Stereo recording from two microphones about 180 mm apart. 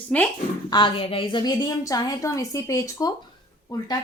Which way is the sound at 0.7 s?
25° left (ahead or behind).